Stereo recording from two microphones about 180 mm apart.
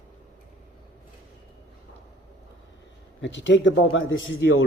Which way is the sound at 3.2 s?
90° left.